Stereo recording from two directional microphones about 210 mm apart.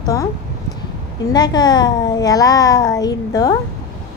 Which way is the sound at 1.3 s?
20° left (ahead or behind).